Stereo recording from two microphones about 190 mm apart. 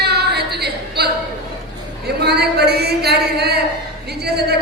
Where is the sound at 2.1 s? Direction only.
60° right (ahead or behind).